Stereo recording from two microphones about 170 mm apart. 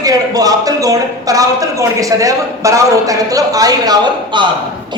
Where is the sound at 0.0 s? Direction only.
20° right (ahead or behind).